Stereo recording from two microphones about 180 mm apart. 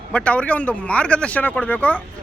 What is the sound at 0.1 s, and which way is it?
Speech, 5° left (ahead or behind).